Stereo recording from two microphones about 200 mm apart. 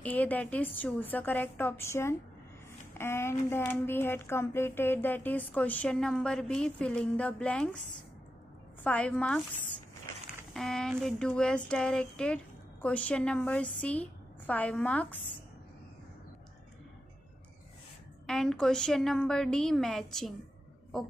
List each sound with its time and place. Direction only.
0.0 s speech: 10° left (ahead or behind)
8.8 s speech: 5° left (ahead or behind)
10.5 s a woman's voice: centre (ahead or behind)
18.2 s a woman's voice: 5° left (ahead or behind)